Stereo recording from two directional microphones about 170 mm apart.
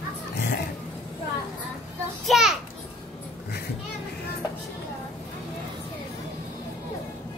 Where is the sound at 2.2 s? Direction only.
Centre (ahead or behind).